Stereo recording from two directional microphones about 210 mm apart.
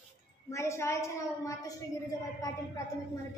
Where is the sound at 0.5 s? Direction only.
15° left (ahead or behind).